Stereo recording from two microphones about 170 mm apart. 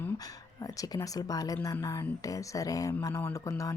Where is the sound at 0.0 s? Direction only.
20° left (ahead or behind).